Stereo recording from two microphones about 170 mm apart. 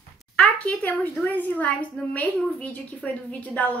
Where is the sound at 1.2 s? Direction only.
10° left (ahead or behind).